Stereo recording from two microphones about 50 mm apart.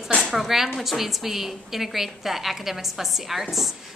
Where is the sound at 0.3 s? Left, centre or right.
Centre.